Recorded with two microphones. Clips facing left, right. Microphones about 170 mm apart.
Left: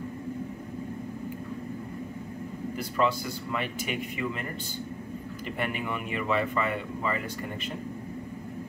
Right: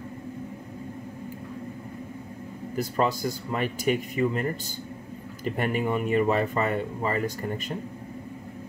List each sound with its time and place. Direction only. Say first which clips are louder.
2.7 s speech: right 2 dB; 40° right (ahead or behind)